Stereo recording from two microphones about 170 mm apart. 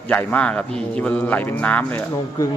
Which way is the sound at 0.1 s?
10° left (ahead or behind).